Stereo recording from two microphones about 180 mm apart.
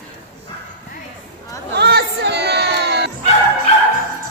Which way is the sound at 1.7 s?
65° right (ahead or behind).